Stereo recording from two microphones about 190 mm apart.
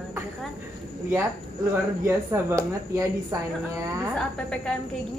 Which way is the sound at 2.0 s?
15° right (ahead or behind).